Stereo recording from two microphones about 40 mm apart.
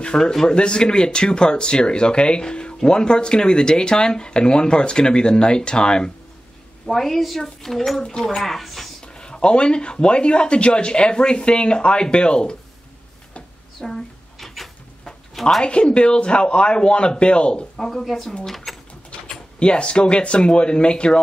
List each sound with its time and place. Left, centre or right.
0.2 s speech: centre
0.6 s speech: left
6.9 s speech: centre
9.0 s speech: left
13.7 s a sound: centre
15.6 s speech: left
17.7 s a woman's voice: centre
18.7 s a sound: centre
19.6 s speech: left